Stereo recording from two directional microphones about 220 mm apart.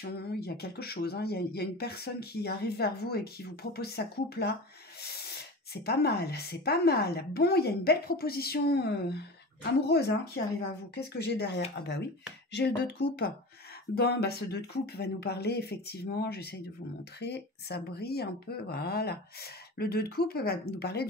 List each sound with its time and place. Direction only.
0.0 s a woman's voice: 45° left (ahead or behind)
5.9 s a woman's voice: 45° left (ahead or behind)